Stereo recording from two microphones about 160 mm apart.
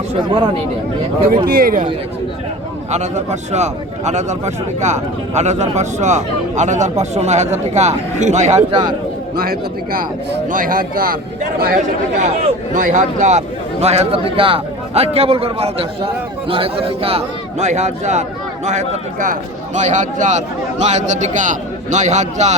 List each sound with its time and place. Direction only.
0.1 s a man's voice: 30° right (ahead or behind)
1.5 s a man's voice: 65° right (ahead or behind)
2.9 s speech: 45° right (ahead or behind)
8.7 s a man's voice: 30° right (ahead or behind)
9.3 s a man's voice: 65° right (ahead or behind)
11.8 s a man's voice: 50° right (ahead or behind)